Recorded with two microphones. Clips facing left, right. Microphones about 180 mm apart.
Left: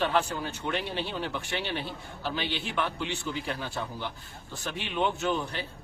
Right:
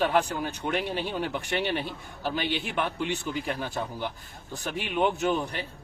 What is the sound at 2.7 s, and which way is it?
Speech, 55° right (ahead or behind).